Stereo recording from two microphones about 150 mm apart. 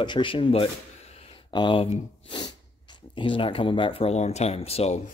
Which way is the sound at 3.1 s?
35° left (ahead or behind).